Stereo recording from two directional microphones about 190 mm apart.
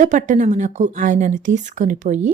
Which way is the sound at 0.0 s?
40° right (ahead or behind).